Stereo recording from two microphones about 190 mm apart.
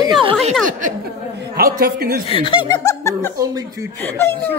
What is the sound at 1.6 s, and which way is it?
Speech, 50° right (ahead or behind).